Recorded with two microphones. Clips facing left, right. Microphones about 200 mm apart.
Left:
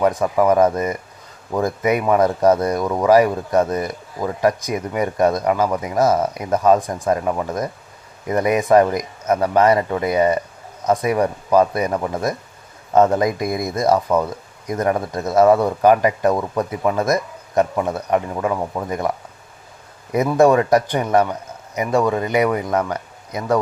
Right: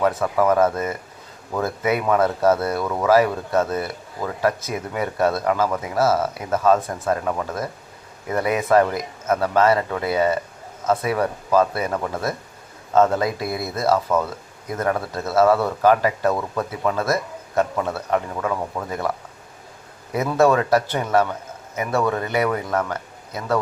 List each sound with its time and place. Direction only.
0.0 s speech: 15° left (ahead or behind)
20.1 s speech: 15° left (ahead or behind)